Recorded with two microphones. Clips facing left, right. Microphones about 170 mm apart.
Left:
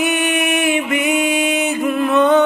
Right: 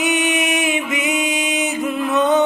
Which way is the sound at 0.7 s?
60° left (ahead or behind).